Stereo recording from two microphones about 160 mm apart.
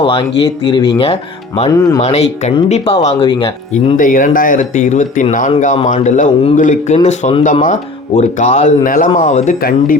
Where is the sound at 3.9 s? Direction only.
55° left (ahead or behind).